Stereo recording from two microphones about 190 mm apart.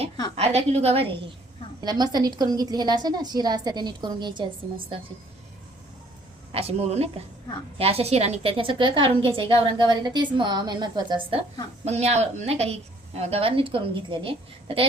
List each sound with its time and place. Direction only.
0.3 s a woman's voice: 35° right (ahead or behind)
1.8 s a woman's voice: 20° right (ahead or behind)
6.5 s a woman's voice: 30° right (ahead or behind)
11.9 s a woman's voice: 35° right (ahead or behind)